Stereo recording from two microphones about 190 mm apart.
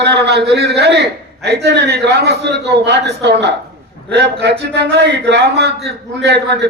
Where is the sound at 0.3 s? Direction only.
60° right (ahead or behind).